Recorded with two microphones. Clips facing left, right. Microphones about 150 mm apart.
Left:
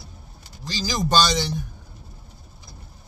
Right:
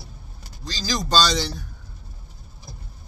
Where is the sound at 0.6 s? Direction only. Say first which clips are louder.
Left 2 dB; 20° left (ahead or behind).